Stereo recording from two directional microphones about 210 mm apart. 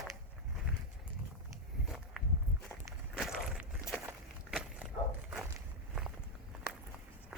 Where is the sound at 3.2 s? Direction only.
Centre (ahead or behind).